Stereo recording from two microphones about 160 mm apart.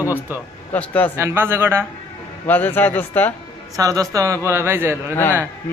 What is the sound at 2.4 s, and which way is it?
Speech, 10° left (ahead or behind).